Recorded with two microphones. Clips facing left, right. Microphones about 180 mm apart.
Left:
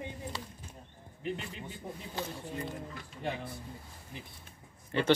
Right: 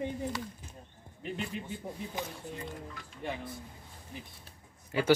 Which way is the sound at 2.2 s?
15° right (ahead or behind).